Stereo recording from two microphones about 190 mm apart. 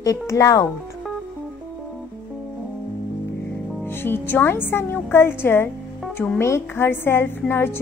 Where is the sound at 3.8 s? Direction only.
10° left (ahead or behind).